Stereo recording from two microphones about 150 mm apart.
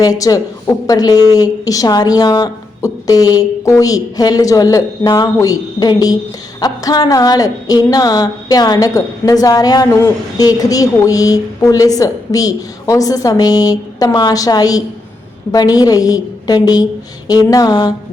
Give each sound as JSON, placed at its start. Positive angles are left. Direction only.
{"t": 0.0, "sound": "speech", "side_deg": 25}